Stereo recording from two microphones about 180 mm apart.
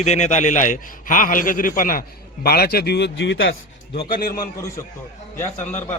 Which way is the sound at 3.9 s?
55° left (ahead or behind).